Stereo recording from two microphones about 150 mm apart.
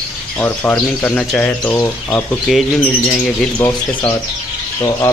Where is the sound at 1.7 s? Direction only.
20° left (ahead or behind).